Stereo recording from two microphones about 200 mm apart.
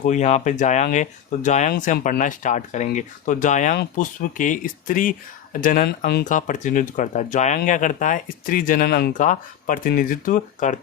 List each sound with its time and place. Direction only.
0.0 s speech: 35° left (ahead or behind)